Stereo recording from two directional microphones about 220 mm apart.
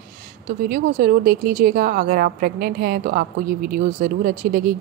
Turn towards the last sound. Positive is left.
turn(degrees=-40)  # may be behind; listen again after turning